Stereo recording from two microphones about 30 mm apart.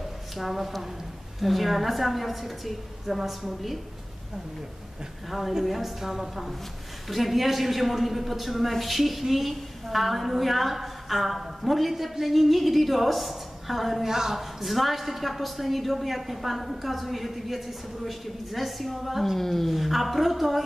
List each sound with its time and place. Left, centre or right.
0.4 s a man's voice: centre
5.6 s a woman's voice: centre
14.0 s a woman's voice: centre
14.4 s a man's voice: centre
19.3 s speech: centre
19.7 s a man's voice: centre